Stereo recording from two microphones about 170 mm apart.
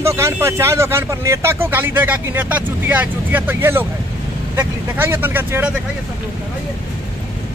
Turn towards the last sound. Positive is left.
turn(degrees=-10)  # may be behind; listen again after turning